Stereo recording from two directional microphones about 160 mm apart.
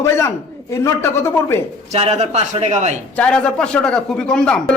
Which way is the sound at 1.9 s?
45° right (ahead or behind).